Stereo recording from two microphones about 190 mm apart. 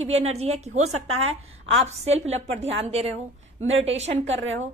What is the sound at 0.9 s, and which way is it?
Speech, 90° right.